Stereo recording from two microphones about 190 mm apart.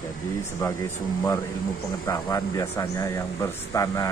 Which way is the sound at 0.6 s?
15° left (ahead or behind).